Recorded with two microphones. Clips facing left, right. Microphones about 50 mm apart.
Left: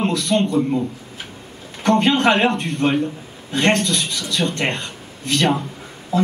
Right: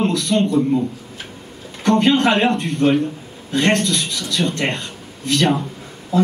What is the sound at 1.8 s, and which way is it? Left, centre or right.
Speech, centre.